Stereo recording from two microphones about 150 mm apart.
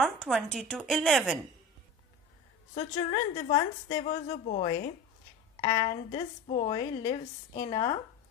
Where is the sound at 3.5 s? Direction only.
30° left (ahead or behind).